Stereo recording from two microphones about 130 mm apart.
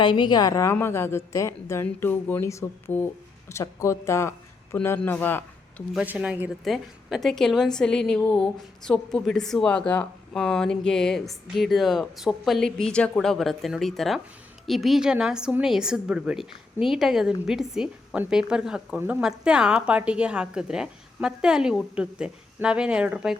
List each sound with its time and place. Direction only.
0.0 s a woman's voice: 35° left (ahead or behind); by 5.8 s 15° left (ahead or behind)
6.1 s speech: 10° right (ahead or behind)
6.7 s a woman's voice: centre (ahead or behind)